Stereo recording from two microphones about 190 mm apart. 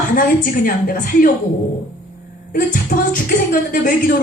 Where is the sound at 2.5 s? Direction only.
45° left (ahead or behind).